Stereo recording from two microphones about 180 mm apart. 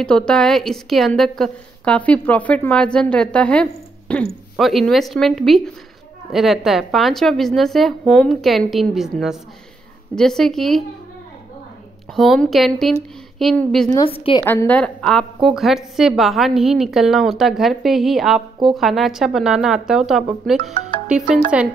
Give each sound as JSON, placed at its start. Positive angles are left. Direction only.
{"t": 0.0, "sound": "a woman's voice", "side_deg": 5}
{"t": 12.2, "sound": "a woman's voice", "side_deg": 0}
{"t": 13.8, "sound": "a woman's voice", "side_deg": 20}
{"t": 14.1, "sound": "a woman's voice", "side_deg": 30}
{"t": 14.4, "sound": "a woman's voice", "side_deg": 10}